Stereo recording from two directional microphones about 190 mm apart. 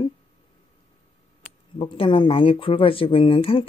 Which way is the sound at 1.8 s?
30° left (ahead or behind).